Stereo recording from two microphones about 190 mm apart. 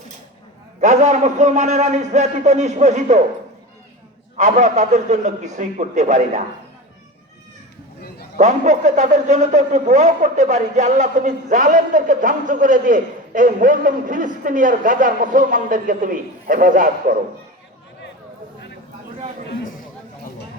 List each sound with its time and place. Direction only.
0.8 s a man's voice: 40° right (ahead or behind)
4.4 s a man's voice: 40° right (ahead or behind)
8.4 s a man's voice: 40° right (ahead or behind)